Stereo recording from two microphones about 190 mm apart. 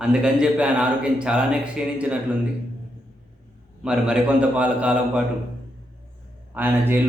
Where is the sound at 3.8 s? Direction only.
5° right (ahead or behind).